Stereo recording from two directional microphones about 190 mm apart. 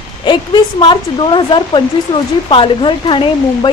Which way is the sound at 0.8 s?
25° left (ahead or behind).